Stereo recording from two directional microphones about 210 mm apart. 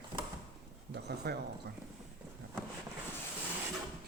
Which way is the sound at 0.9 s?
50° right (ahead or behind).